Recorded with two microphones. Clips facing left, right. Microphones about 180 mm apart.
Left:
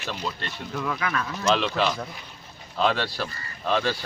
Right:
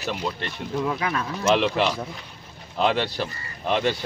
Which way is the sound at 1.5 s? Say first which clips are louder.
Right 3 dB; 15° right (ahead or behind).